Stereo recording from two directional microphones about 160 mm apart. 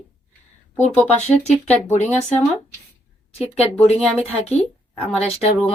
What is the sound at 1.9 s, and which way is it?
Speech, 45° left (ahead or behind).